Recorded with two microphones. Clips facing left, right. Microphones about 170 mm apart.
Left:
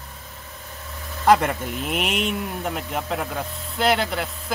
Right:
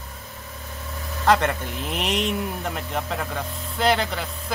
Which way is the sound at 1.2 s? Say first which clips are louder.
Left 2 dB; 10° left (ahead or behind).